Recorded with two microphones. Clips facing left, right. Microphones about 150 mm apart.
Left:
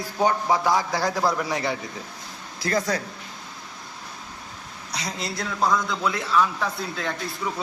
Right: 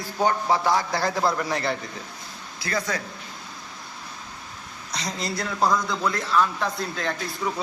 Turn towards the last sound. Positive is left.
turn(degrees=0)  # may be behind; listen again after turning